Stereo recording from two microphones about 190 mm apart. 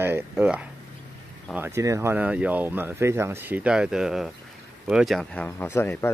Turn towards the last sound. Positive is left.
turn(degrees=15)  # may be behind; listen again after turning